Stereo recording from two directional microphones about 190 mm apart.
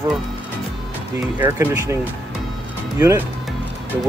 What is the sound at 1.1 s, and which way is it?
Speech, 10° right (ahead or behind).